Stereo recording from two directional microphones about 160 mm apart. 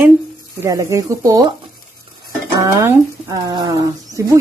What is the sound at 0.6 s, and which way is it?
Speech, 20° right (ahead or behind).